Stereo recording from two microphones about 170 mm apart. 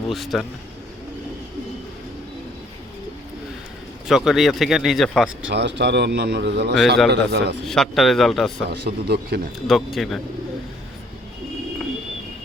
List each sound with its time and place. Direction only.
0.1 s speech: centre (ahead or behind)
4.1 s speech: centre (ahead or behind)
5.5 s speech: 90° right
7.1 s a man's voice: 75° right (ahead or behind)
7.6 s speech: centre (ahead or behind)
8.7 s a man's voice: 70° right (ahead or behind)
9.6 s speech: centre (ahead or behind)